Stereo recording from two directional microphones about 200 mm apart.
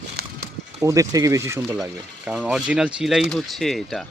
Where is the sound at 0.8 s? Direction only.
15° right (ahead or behind).